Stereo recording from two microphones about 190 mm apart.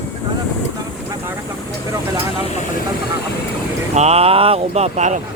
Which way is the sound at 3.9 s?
35° right (ahead or behind).